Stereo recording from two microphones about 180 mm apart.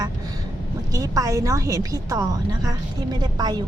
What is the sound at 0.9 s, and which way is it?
A woman's voice, 20° right (ahead or behind).